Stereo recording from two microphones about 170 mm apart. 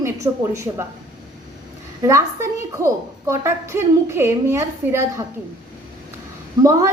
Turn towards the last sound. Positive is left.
turn(degrees=-20)  # may be behind; listen again after turning